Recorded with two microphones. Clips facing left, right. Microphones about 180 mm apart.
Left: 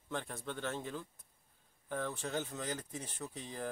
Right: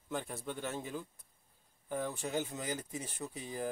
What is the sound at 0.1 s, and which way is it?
Speech, 5° right (ahead or behind).